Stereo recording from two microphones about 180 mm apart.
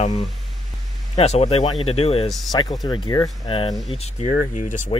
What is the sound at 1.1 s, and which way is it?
Speech, 35° left (ahead or behind).